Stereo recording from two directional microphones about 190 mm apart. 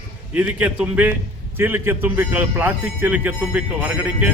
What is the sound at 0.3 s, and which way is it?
Speech, 10° right (ahead or behind).